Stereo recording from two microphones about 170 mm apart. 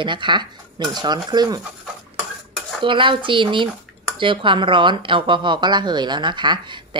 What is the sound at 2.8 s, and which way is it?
Speech, 30° right (ahead or behind).